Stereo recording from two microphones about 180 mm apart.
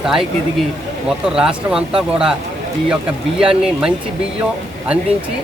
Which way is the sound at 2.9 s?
5° right (ahead or behind).